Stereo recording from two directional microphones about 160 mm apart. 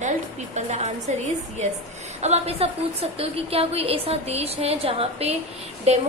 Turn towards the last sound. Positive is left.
turn(degrees=-40)  # may be behind; listen again after turning